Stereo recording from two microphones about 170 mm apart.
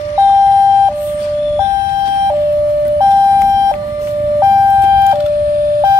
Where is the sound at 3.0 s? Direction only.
25° right (ahead or behind).